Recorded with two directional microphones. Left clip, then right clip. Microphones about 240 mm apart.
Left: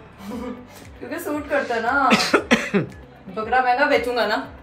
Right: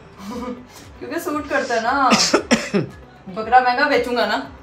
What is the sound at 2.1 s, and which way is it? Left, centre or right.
Cough, centre.